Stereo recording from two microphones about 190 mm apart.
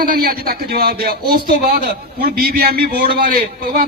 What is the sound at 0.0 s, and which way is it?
Speech, 50° right (ahead or behind).